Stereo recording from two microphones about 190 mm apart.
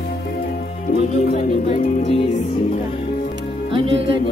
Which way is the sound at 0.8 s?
45° left (ahead or behind).